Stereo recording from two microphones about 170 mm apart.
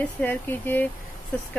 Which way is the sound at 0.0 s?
10° left (ahead or behind).